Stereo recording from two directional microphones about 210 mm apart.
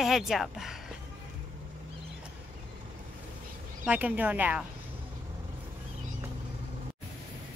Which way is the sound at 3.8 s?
5° right (ahead or behind).